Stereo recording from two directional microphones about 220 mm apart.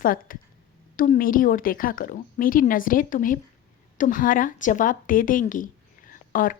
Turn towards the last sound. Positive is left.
turn(degrees=40)  # may be behind; listen again after turning